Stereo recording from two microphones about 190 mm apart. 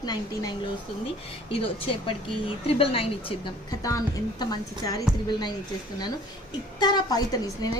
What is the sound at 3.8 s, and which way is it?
A woman's voice, 20° left (ahead or behind).